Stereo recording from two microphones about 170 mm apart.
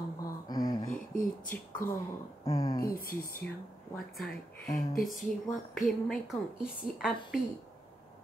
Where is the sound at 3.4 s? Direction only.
10° left (ahead or behind).